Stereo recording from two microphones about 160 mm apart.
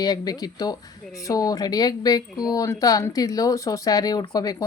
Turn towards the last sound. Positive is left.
turn(degrees=25)  # may be behind; listen again after turning